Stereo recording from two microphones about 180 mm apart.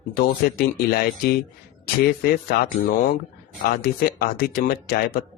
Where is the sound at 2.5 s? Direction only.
50° left (ahead or behind).